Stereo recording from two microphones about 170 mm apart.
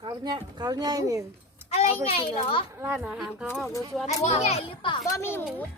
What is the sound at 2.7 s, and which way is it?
Speech, 15° right (ahead or behind).